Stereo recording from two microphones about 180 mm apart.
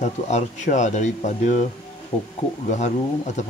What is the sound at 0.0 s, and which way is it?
Speech, 40° left (ahead or behind).